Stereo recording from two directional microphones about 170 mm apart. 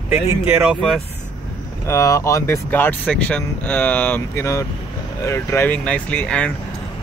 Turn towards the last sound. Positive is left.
turn(degrees=5)  # may be behind; listen again after turning